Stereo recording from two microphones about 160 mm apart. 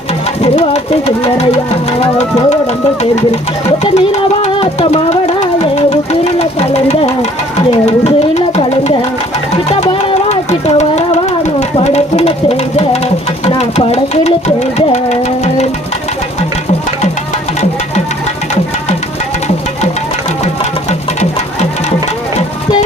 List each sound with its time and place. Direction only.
0.4 s speech: 40° left (ahead or behind)
3.9 s music: 40° left (ahead or behind)
6.1 s a sound: 40° left (ahead or behind)
7.9 s music: 45° left (ahead or behind)
13.4 s speech: 40° left (ahead or behind)